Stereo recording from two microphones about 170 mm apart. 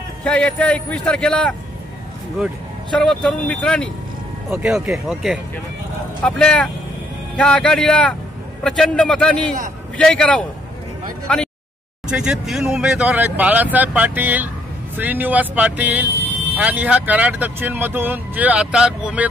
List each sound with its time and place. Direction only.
0.2 s a man's voice: 5° left (ahead or behind)